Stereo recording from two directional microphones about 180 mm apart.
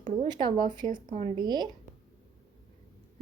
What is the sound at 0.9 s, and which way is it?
Speech, 40° right (ahead or behind).